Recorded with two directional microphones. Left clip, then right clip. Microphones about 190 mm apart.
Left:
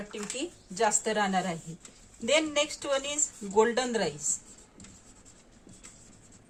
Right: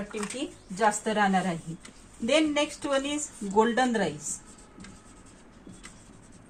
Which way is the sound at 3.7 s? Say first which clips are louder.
Right 3 dB; 30° left (ahead or behind).